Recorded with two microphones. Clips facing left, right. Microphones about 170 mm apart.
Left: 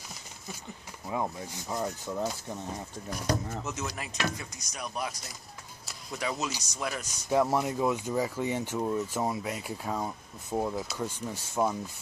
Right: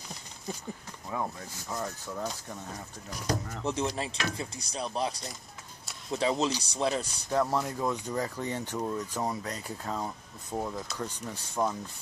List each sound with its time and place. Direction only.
1.0 s speech: 15° left (ahead or behind)
3.6 s speech: 30° right (ahead or behind)
7.2 s speech: 10° left (ahead or behind)